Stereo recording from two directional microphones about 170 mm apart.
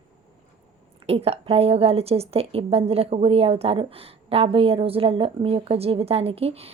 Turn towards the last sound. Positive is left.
turn(degrees=-35)  # may be behind; listen again after turning